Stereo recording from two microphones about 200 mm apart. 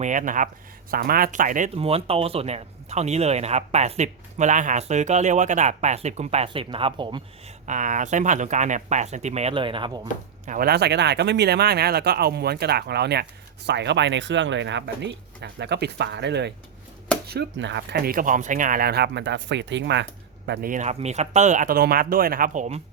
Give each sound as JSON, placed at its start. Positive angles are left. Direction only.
{"t": 0.0, "sound": "speech", "side_deg": -40}
{"t": 7.7, "sound": "speech", "side_deg": -40}
{"t": 10.4, "sound": "speech", "side_deg": -45}
{"t": 20.5, "sound": "speech", "side_deg": -45}